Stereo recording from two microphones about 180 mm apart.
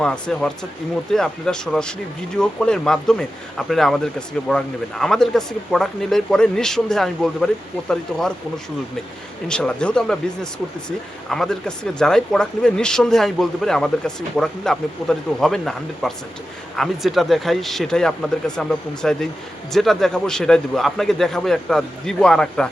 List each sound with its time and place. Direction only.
0.0 s speech: 5° left (ahead or behind)
9.5 s speech: 5° left (ahead or behind)